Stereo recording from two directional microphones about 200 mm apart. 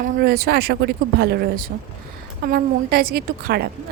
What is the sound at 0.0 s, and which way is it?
Speech, 50° right (ahead or behind).